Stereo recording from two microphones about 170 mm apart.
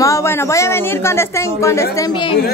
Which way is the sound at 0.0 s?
15° left (ahead or behind).